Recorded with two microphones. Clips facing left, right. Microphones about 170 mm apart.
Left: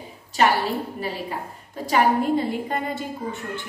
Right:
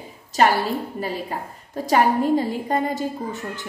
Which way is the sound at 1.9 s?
40° right (ahead or behind).